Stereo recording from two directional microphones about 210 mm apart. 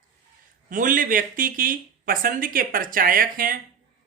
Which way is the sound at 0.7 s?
40° right (ahead or behind).